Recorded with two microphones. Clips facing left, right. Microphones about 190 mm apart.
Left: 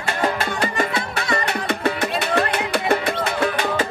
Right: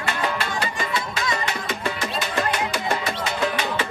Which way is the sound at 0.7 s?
60° left (ahead or behind).